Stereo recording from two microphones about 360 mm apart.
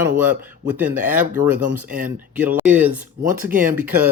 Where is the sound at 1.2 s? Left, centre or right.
Right.